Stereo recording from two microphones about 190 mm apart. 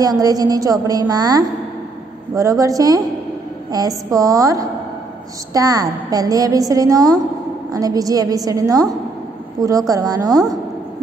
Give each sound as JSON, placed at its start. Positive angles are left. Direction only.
{"t": 0.0, "sound": "a woman's voice", "side_deg": -20}